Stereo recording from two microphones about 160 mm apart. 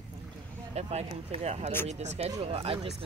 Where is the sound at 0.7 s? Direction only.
40° right (ahead or behind).